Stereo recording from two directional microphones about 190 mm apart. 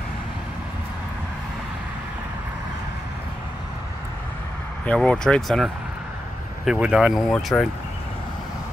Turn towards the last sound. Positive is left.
turn(degrees=0)  # may be behind; listen again after turning